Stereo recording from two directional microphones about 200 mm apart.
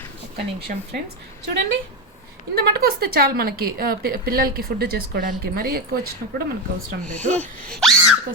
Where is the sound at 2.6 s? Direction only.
50° right (ahead or behind).